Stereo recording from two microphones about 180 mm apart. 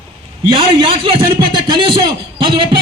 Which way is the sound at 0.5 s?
30° right (ahead or behind).